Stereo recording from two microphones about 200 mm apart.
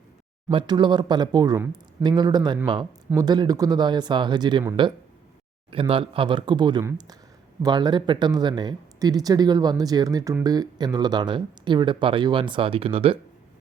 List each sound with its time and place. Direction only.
0.4 s speech: 20° right (ahead or behind)
5.7 s speech: 25° right (ahead or behind)